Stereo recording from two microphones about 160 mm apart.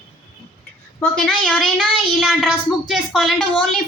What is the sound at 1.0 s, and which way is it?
A woman's voice, 5° left (ahead or behind).